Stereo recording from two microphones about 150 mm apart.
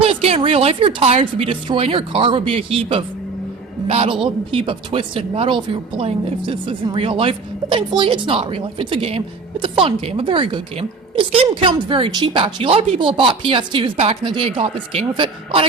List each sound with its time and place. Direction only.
0.0 s speech: 40° right (ahead or behind)